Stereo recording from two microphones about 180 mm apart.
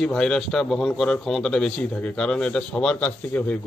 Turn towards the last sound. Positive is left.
turn(degrees=10)  # may be behind; listen again after turning